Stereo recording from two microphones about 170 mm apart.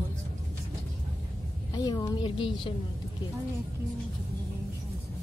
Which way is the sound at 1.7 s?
20° left (ahead or behind).